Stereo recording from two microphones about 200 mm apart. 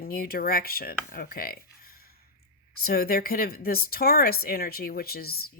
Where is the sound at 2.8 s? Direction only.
50° left (ahead or behind).